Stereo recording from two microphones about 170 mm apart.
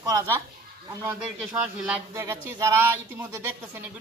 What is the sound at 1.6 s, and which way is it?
Speech, 5° right (ahead or behind).